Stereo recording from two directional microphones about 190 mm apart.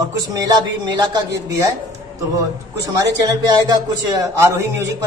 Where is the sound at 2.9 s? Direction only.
20° right (ahead or behind).